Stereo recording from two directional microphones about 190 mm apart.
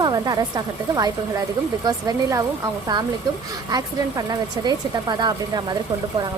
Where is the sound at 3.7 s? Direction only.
20° right (ahead or behind).